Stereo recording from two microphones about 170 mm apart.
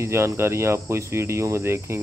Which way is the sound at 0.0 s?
15° right (ahead or behind).